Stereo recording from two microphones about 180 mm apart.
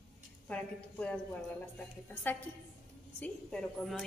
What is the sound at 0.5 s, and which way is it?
Speech, 10° left (ahead or behind).